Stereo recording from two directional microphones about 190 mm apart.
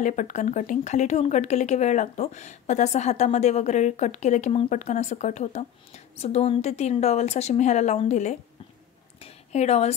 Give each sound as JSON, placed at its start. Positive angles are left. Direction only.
{"t": 0.0, "sound": "a woman's voice", "side_deg": 40}